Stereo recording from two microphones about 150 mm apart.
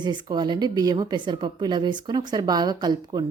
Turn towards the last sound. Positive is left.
turn(degrees=-30)  # may be behind; listen again after turning